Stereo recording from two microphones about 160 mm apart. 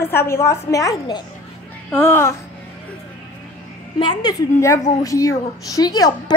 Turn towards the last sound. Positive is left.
turn(degrees=25)  # may be behind; listen again after turning